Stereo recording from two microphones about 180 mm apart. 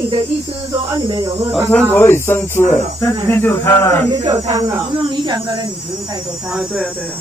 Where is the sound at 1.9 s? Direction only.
10° left (ahead or behind).